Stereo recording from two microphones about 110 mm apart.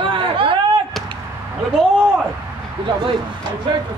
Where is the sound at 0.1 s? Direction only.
50° right (ahead or behind).